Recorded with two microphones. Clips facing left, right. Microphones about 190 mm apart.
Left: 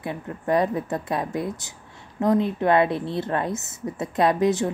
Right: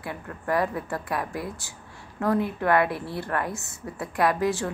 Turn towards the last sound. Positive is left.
turn(degrees=20)  # may be behind; listen again after turning